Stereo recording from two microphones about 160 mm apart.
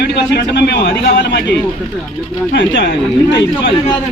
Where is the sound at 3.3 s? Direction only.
90° left.